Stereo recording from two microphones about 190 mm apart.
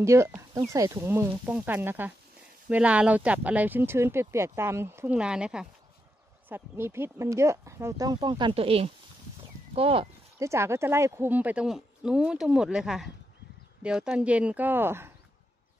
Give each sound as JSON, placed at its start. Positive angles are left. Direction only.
{"t": 0.0, "sound": "speech", "side_deg": -15}
{"t": 10.4, "sound": "speech", "side_deg": -15}